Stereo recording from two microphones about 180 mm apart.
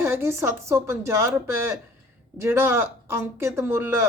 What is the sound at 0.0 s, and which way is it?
Speech, 15° right (ahead or behind).